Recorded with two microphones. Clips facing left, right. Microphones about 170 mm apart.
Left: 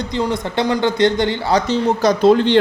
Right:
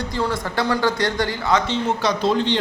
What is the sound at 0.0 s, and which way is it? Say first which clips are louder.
A man's voice: left 3 dB; 20° left (ahead or behind).